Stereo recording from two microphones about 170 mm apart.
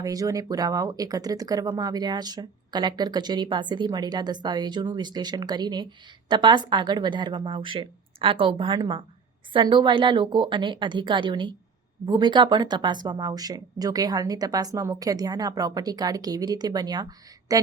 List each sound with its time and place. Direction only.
0.0 s speech: 20° right (ahead or behind)